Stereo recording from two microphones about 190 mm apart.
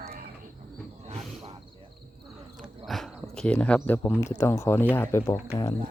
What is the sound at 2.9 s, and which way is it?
Speech, centre (ahead or behind).